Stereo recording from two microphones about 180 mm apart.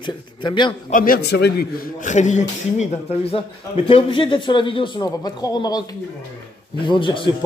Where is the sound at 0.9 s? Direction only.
50° left (ahead or behind).